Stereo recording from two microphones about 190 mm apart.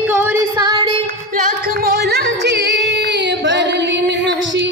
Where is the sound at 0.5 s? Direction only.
20° right (ahead or behind).